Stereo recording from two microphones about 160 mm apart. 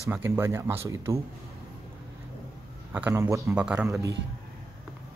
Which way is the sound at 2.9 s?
10° right (ahead or behind).